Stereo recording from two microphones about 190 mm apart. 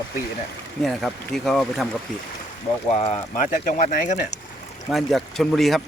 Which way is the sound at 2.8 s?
35° left (ahead or behind).